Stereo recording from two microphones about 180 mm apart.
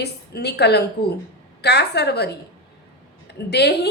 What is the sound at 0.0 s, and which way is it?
A woman's voice, 65° left (ahead or behind).